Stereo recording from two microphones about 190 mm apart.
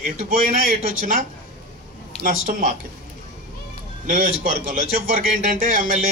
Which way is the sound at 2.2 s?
45° right (ahead or behind).